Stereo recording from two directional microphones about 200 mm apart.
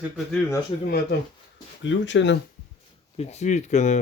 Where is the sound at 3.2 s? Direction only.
35° left (ahead or behind).